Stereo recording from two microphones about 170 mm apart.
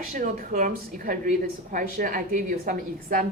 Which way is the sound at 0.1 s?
55° right (ahead or behind).